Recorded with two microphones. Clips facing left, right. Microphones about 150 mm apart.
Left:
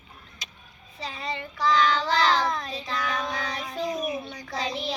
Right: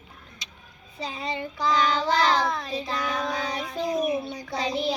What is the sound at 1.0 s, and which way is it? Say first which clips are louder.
Speech: right 2 dB; 20° right (ahead or behind).